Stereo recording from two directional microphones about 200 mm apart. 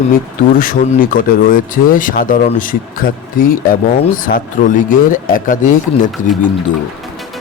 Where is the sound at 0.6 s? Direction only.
45° left (ahead or behind).